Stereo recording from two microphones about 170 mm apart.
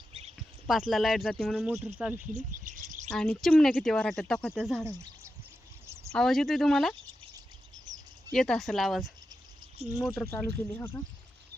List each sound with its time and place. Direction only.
0.3 s speech: centre (ahead or behind)
2.3 s a sound: 50° right (ahead or behind)
3.1 s speech: centre (ahead or behind)
6.1 s speech: centre (ahead or behind)
7.9 s a sound: 25° right (ahead or behind)
8.3 s speech: centre (ahead or behind)
9.8 s speech: 35° right (ahead or behind)
10.8 s speech: 15° left (ahead or behind)